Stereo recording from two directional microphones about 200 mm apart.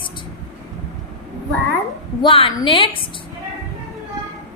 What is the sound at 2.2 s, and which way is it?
Speech, 25° left (ahead or behind).